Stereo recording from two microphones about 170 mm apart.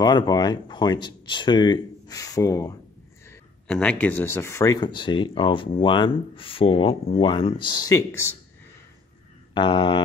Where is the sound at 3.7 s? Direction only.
5° left (ahead or behind).